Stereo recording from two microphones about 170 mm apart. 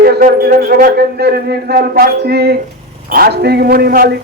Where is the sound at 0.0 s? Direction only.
65° right (ahead or behind).